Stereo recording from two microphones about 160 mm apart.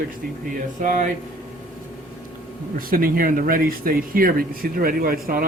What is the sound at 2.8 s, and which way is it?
Speech, 65° right (ahead or behind).